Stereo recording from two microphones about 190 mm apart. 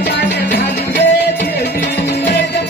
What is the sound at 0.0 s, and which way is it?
Music, 60° left (ahead or behind).